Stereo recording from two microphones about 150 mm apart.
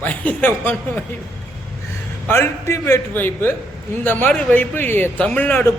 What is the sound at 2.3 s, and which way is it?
A man's voice, 20° left (ahead or behind).